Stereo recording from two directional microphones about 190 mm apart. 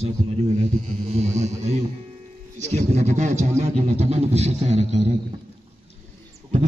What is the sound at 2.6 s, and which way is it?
Speech, 35° right (ahead or behind).